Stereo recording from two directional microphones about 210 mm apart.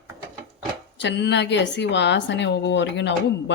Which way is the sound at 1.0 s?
55° left (ahead or behind).